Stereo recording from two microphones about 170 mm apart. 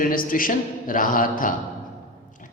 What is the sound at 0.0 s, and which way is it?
A man's voice, 55° left (ahead or behind).